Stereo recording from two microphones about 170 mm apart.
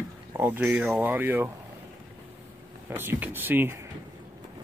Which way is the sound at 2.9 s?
10° right (ahead or behind).